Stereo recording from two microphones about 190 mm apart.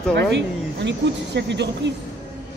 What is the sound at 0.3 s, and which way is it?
Speech, 70° right (ahead or behind).